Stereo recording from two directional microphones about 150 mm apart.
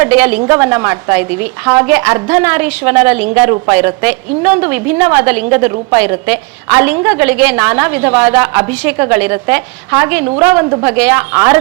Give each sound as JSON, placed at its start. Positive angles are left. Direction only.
{"t": 0.0, "sound": "a woman's voice", "side_deg": -10}